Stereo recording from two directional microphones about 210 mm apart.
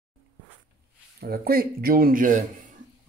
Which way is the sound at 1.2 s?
45° right (ahead or behind).